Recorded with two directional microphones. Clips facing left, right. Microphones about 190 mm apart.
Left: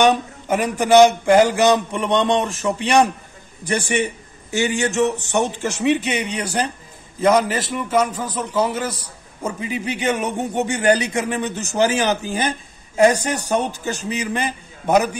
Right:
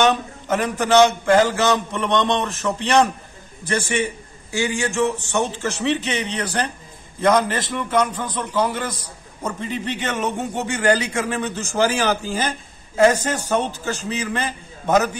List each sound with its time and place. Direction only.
0.0 s a man's voice: 10° left (ahead or behind)